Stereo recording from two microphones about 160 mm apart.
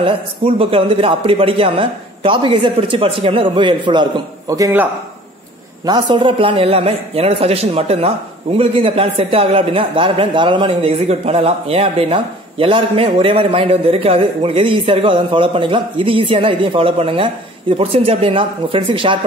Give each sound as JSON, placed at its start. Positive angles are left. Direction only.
{"t": 0.6, "sound": "speech", "side_deg": -35}
{"t": 5.9, "sound": "speech", "side_deg": -30}